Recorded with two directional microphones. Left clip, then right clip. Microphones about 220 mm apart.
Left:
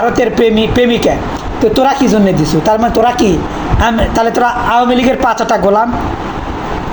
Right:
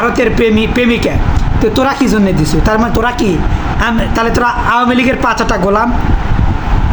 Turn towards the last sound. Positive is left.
turn(degrees=-10)  # may be behind; listen again after turning